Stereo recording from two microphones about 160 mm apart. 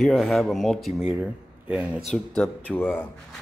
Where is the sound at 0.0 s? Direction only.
Centre (ahead or behind).